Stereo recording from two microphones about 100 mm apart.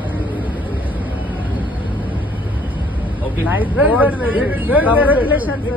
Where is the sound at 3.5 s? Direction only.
15° right (ahead or behind).